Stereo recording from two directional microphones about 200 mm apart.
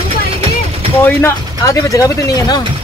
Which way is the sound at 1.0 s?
15° left (ahead or behind).